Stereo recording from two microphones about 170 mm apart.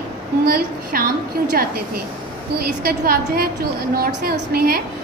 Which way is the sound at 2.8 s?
60° right (ahead or behind).